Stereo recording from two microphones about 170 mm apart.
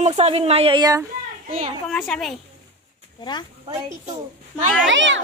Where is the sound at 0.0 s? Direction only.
40° right (ahead or behind); by 1.0 s 25° right (ahead or behind).